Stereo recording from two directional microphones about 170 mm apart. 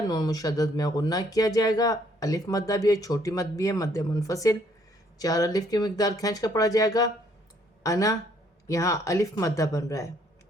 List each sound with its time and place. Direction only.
0.1 s speech: 20° left (ahead or behind)